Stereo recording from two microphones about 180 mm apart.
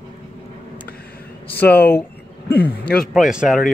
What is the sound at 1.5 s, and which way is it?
Speech, 10° left (ahead or behind).